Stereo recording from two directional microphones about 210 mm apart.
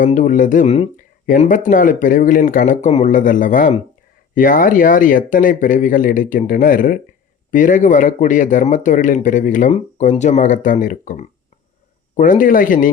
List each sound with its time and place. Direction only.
0.0 s speech: 35° left (ahead or behind)